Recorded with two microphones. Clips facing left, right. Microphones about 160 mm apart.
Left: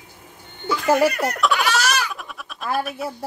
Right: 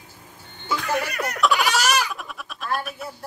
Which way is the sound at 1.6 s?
15° right (ahead or behind).